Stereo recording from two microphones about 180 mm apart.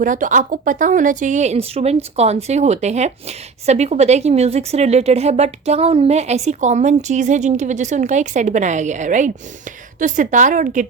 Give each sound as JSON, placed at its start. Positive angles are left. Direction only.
{"t": 0.0, "sound": "a woman's voice", "side_deg": -45}